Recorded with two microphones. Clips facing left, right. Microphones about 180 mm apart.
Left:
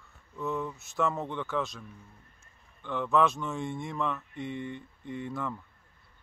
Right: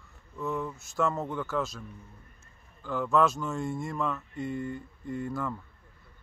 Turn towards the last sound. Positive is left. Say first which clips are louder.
# right 2 dB
turn(degrees=0)  # may be behind; listen again after turning